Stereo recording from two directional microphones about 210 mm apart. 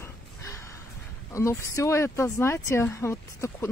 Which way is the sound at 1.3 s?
15° left (ahead or behind).